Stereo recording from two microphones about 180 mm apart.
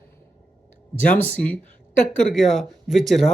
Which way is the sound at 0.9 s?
10° left (ahead or behind).